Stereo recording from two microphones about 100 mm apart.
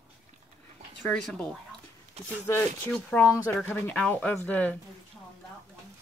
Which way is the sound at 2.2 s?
90° right.